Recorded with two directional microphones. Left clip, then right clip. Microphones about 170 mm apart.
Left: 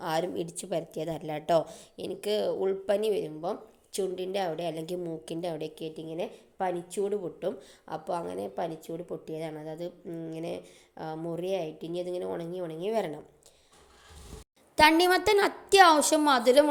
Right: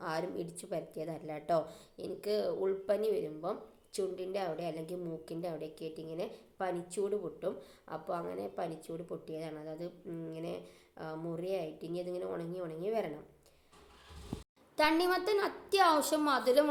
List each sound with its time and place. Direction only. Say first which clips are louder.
0.0 s a woman's voice: left 7 dB; 40° left (ahead or behind)
14.8 s a woman's voice: left 9 dB; 45° left (ahead or behind)